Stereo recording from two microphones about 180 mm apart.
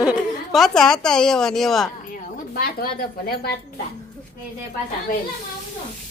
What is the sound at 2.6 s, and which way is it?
Speech, 55° left (ahead or behind).